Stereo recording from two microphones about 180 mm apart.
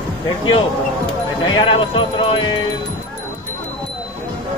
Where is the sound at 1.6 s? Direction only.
30° left (ahead or behind).